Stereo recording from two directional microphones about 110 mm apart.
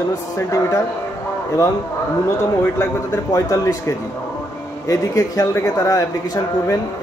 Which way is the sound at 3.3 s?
30° left (ahead or behind).